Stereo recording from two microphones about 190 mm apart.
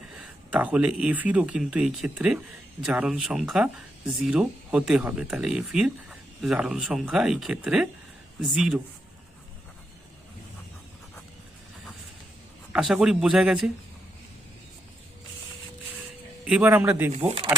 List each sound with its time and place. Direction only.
0.2 s speech: 5° right (ahead or behind)
12.7 s speech: 5° right (ahead or behind)
16.5 s a man's voice: 10° right (ahead or behind)
17.2 s speech: 30° right (ahead or behind)